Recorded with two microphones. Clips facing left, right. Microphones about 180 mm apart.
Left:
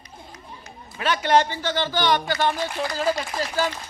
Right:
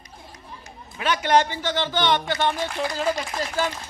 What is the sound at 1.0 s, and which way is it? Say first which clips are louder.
Speech: even; 10° right (ahead or behind).